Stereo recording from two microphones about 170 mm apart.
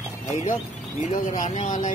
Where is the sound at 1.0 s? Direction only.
50° left (ahead or behind).